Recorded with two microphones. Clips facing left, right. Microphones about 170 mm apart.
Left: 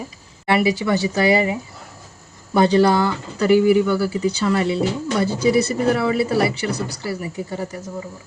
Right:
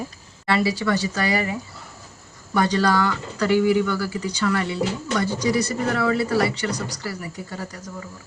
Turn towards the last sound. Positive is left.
turn(degrees=25)  # may be behind; listen again after turning